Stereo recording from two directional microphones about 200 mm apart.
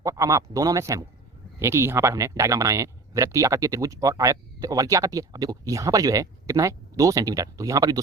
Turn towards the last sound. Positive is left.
turn(degrees=-15)  # may be behind; listen again after turning